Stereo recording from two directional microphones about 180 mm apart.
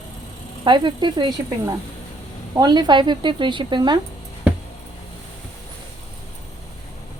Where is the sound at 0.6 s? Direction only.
25° right (ahead or behind).